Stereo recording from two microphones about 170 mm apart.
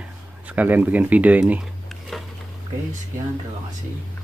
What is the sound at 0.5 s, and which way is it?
Speech, 10° right (ahead or behind).